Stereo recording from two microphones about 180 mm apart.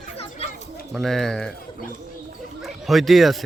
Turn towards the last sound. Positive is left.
turn(degrees=0)  # may be behind; listen again after turning